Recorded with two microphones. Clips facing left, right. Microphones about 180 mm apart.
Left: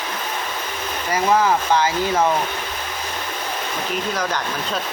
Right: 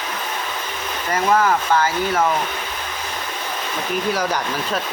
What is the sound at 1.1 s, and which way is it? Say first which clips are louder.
Speech: even; 15° left (ahead or behind).